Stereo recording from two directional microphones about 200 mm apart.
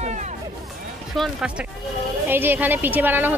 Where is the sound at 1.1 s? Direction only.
Centre (ahead or behind).